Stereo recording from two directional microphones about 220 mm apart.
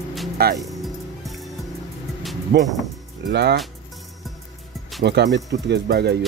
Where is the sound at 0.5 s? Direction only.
Centre (ahead or behind).